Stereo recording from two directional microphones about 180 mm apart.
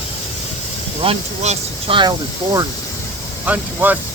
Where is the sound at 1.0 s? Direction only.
35° right (ahead or behind).